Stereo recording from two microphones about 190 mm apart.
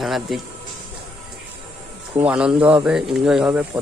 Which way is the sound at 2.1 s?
5° right (ahead or behind).